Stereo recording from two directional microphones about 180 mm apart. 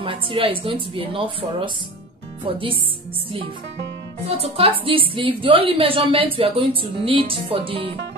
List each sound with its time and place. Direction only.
0.0 s a woman's voice: 30° right (ahead or behind)
4.3 s a woman's voice: 35° right (ahead or behind)